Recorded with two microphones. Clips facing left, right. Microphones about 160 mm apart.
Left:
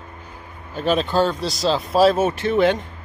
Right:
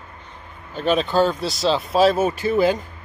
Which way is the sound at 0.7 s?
Centre (ahead or behind).